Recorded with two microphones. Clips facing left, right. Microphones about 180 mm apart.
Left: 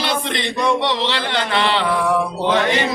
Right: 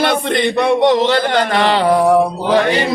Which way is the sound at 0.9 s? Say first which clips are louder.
Right 8 dB; 45° right (ahead or behind).